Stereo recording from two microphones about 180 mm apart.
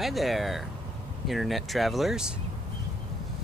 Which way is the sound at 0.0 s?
Centre (ahead or behind).